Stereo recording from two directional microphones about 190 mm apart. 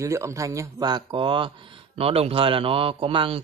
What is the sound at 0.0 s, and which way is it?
Speech, 15° right (ahead or behind).